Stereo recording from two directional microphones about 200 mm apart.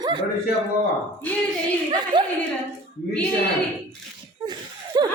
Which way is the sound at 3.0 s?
50° left (ahead or behind).